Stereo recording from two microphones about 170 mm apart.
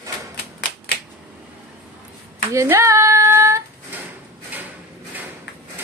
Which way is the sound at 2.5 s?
15° right (ahead or behind).